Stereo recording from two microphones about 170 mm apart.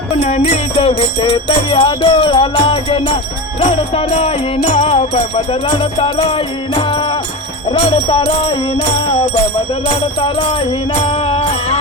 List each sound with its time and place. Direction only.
0.2 s music: 40° left (ahead or behind)
0.8 s music: 30° left (ahead or behind)
10.2 s music: 35° left (ahead or behind)